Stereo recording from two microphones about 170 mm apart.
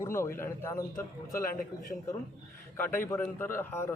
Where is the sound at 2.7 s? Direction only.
15° left (ahead or behind).